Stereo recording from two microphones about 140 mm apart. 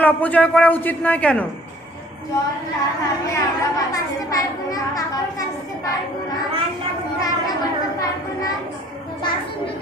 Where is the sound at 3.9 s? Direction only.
25° left (ahead or behind).